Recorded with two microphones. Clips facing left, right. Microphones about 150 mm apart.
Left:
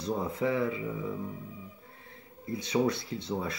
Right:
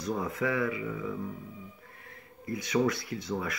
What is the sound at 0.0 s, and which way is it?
Speech, 30° left (ahead or behind).